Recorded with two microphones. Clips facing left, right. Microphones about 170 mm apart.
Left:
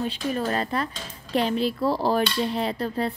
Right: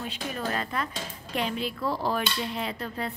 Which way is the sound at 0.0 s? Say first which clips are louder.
Left 6 dB; 35° left (ahead or behind).